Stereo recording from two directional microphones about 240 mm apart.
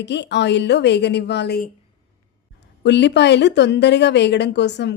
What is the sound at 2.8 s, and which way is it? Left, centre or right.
Speech, left.